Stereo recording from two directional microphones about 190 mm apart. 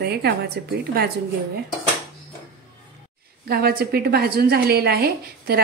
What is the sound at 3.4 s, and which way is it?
A woman's voice, 55° right (ahead or behind).